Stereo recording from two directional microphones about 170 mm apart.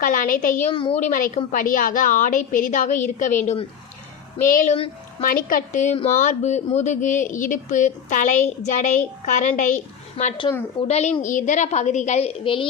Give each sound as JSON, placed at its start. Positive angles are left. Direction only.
{"t": 0.0, "sound": "a woman's voice", "side_deg": 55}
{"t": 0.7, "sound": "a woman's voice", "side_deg": 30}
{"t": 4.4, "sound": "a woman's voice", "side_deg": 50}